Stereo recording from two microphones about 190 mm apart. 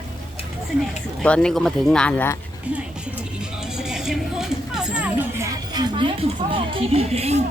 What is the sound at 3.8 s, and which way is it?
Speech, 5° right (ahead or behind).